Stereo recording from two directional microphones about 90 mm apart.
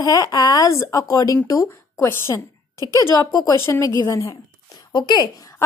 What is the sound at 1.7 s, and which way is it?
A woman's voice, 25° left (ahead or behind).